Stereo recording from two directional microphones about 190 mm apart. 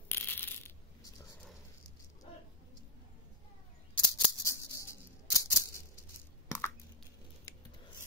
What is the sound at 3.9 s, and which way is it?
Scissors, 20° left (ahead or behind).